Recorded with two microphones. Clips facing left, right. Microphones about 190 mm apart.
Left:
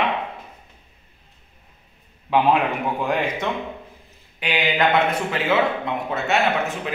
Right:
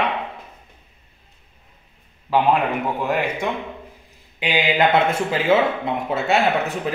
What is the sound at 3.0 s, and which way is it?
Speech, 10° right (ahead or behind).